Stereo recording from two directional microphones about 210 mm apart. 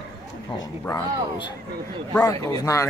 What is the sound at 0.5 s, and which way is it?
Speech, 15° left (ahead or behind).